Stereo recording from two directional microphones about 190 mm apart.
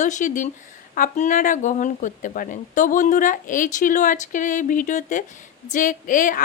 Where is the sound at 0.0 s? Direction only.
40° left (ahead or behind).